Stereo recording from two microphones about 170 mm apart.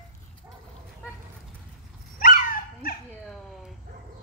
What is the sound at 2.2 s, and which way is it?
Dog, 55° left (ahead or behind).